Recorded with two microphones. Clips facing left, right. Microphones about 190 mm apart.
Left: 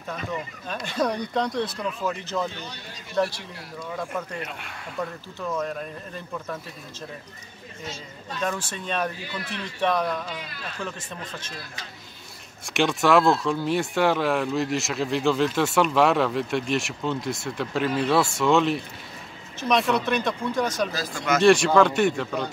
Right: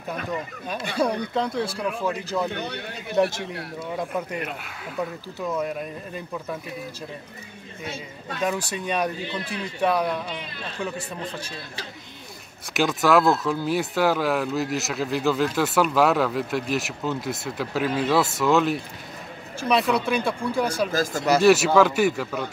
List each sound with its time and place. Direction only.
0.3 s speech: 10° right (ahead or behind)
2.5 s speech: 60° right (ahead or behind)
4.1 s speech: 5° right (ahead or behind)
7.8 s speech: 60° right (ahead or behind)
8.7 s speech: 15° right (ahead or behind)
11.0 s a man's voice: 35° right (ahead or behind)
12.7 s speech: centre (ahead or behind)
20.9 s speech: 45° right (ahead or behind)
21.4 s speech: 5° right (ahead or behind)